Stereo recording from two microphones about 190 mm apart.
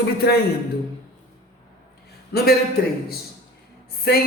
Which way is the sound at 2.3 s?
55° left (ahead or behind).